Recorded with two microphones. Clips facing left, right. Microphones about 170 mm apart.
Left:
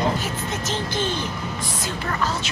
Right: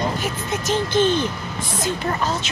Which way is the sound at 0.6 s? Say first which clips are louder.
Right 9 dB; 15° right (ahead or behind).